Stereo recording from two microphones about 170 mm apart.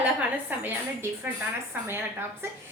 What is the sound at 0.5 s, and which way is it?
Speech, 10° right (ahead or behind).